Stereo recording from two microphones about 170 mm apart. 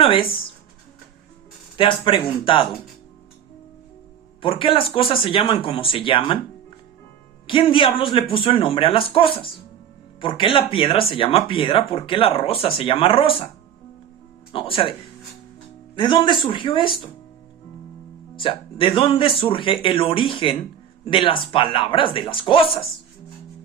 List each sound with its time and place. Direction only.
0.0 s speech: 30° left (ahead or behind)
1.7 s speech: 30° left (ahead or behind)
4.4 s speech: 30° left (ahead or behind)
7.4 s speech: 30° left (ahead or behind)
14.5 s speech: 30° left (ahead or behind)
16.0 s speech: 25° left (ahead or behind)
18.3 s speech: 30° left (ahead or behind)